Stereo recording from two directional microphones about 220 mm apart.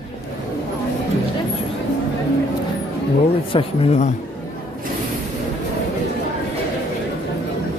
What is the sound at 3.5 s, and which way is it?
Speech, 25° left (ahead or behind).